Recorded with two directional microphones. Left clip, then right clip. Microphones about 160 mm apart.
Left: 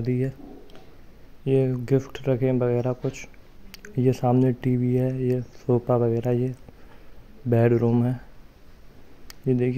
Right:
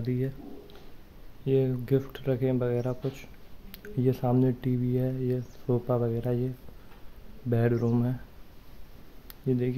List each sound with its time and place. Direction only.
0.0 s speech: 30° left (ahead or behind)
1.4 s speech: 25° left (ahead or behind)
9.3 s a sound: 30° left (ahead or behind)